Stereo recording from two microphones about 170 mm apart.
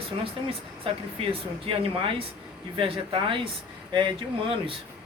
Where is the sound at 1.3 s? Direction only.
30° right (ahead or behind).